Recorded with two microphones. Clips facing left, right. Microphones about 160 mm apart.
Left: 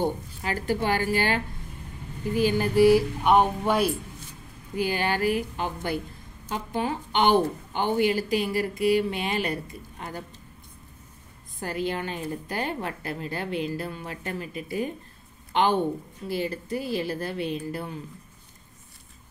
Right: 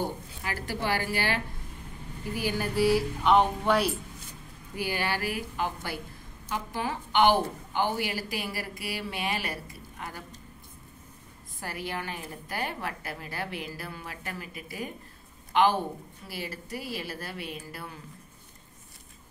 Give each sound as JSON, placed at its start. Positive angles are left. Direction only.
{"t": 0.4, "sound": "speech", "side_deg": 20}
{"t": 2.3, "sound": "speech", "side_deg": 20}
{"t": 11.6, "sound": "speech", "side_deg": 25}